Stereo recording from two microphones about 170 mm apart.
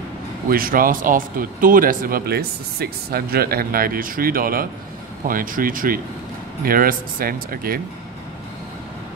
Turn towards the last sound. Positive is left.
turn(degrees=-60)  # may be behind; listen again after turning